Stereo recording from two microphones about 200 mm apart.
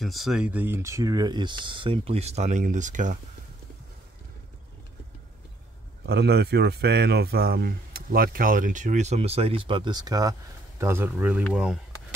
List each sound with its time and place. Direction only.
0.0 s speech: centre (ahead or behind); by 3.2 s 40° right (ahead or behind)
6.0 s speech: 55° right (ahead or behind); by 11.8 s 5° right (ahead or behind)